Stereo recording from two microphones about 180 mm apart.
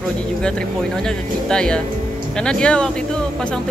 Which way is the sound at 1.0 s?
5° left (ahead or behind).